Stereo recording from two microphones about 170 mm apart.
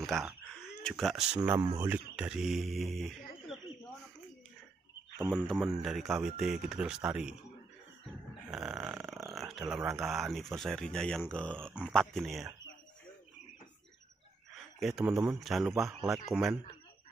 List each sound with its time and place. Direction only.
0.0 s a sound: centre (ahead or behind)
0.8 s speech: centre (ahead or behind)
1.4 s speech: 15° right (ahead or behind); by 3.2 s centre (ahead or behind)
5.6 s speech: centre (ahead or behind)
8.5 s speech: 5° right (ahead or behind)
9.1 s a sound: centre (ahead or behind)
9.5 s speech: centre (ahead or behind)
14.5 s a sound: centre (ahead or behind)
15.3 s speech: centre (ahead or behind)